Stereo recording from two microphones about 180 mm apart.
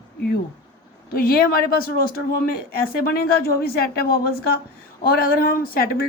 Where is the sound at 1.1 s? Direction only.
55° left (ahead or behind).